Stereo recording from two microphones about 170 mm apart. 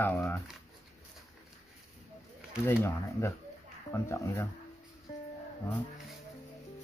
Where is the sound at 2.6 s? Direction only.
15° left (ahead or behind).